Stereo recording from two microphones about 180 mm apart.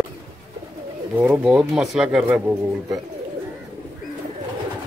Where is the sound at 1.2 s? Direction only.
5° right (ahead or behind).